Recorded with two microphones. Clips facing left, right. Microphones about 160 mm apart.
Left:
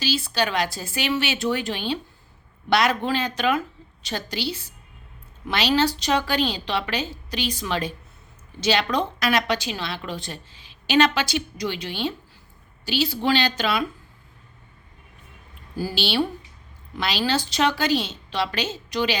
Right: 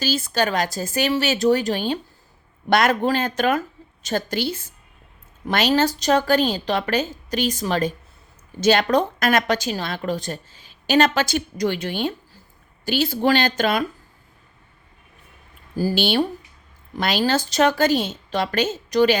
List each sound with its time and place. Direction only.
0.0 s a woman's voice: 45° right (ahead or behind)
15.7 s a woman's voice: 40° right (ahead or behind)